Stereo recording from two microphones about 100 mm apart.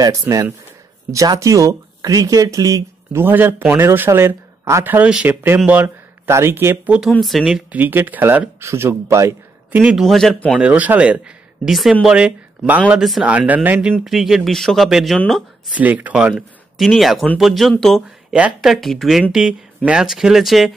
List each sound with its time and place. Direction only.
0.0 s speech: 35° right (ahead or behind)
4.8 s speech: 15° right (ahead or behind)
7.0 s speech: centre (ahead or behind)
7.7 s speech: 20° right (ahead or behind)
9.9 s speech: 5° left (ahead or behind)
10.6 s speech: 15° right (ahead or behind)
14.0 s speech: centre (ahead or behind)
15.7 s speech: 15° right (ahead or behind); by 18.0 s centre (ahead or behind)
18.3 s speech: 10° right (ahead or behind)